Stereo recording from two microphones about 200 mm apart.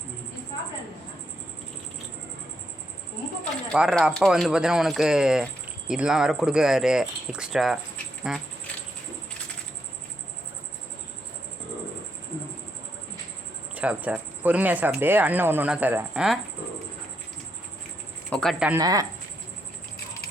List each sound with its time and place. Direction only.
3.7 s speech: centre (ahead or behind)
13.7 s speech: 10° right (ahead or behind)
18.3 s speech: 5° left (ahead or behind)
18.7 s speech: 20° right (ahead or behind)